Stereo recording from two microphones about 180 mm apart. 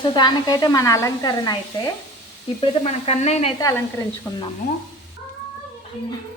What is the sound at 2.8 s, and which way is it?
Sizzle, 35° left (ahead or behind).